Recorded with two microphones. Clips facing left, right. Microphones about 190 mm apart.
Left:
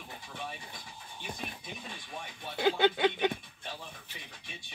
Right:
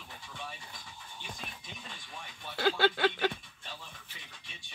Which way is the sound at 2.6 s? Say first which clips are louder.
Left 2 dB; 15° left (ahead or behind).